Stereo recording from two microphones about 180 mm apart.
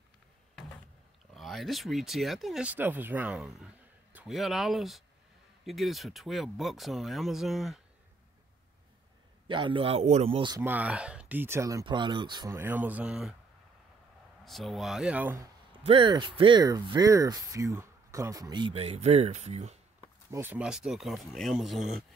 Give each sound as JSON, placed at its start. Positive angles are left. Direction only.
{"t": 1.3, "sound": "speech", "side_deg": 0}
{"t": 9.5, "sound": "a man's voice", "side_deg": -25}
{"t": 10.6, "sound": "speech", "side_deg": -10}
{"t": 12.5, "sound": "speech", "side_deg": -10}
{"t": 14.4, "sound": "speech", "side_deg": 0}
{"t": 15.8, "sound": "speech", "side_deg": -30}
{"t": 20.2, "sound": "speech", "side_deg": -15}